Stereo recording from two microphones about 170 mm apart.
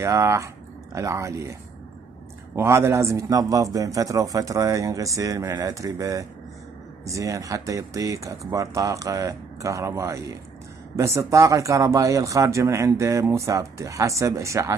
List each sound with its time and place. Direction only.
0.0 s a man's voice: 15° right (ahead or behind)